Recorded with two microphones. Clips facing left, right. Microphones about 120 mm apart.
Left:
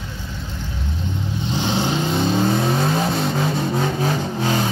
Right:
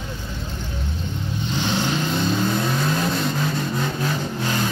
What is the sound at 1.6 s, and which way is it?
Vehicle, 25° left (ahead or behind).